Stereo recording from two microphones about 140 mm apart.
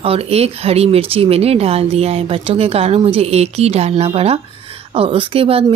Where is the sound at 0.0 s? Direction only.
45° right (ahead or behind).